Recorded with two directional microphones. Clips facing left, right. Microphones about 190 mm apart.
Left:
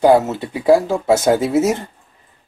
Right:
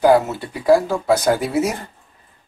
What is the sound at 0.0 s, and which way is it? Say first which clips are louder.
Speech: left 2 dB; 20° left (ahead or behind).